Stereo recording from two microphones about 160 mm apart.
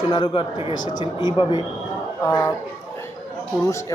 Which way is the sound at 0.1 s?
30° left (ahead or behind).